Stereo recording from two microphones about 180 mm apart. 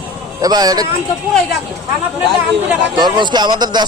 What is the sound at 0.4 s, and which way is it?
Speech, 20° right (ahead or behind).